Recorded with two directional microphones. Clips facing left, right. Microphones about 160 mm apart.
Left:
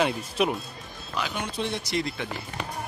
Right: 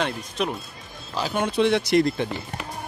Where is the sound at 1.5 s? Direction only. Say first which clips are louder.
Right 12 dB; 80° right.